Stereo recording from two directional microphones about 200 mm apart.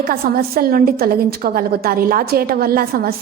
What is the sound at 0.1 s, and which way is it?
A woman's voice, 50° right (ahead or behind).